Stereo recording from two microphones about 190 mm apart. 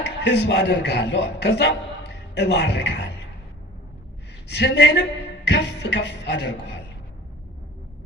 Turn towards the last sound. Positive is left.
turn(degrees=65)  # may be behind; listen again after turning